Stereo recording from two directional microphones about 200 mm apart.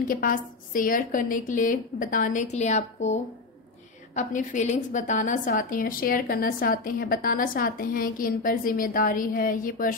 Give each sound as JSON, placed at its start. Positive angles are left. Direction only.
{"t": 0.0, "sound": "a woman's voice", "side_deg": 45}